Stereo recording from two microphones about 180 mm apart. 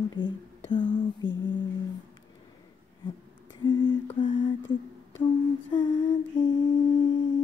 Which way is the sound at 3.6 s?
20° left (ahead or behind).